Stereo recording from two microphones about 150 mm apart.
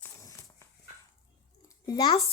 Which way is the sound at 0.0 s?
20° left (ahead or behind).